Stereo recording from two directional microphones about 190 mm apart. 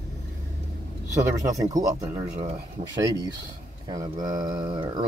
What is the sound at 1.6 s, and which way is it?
Speech, 20° right (ahead or behind).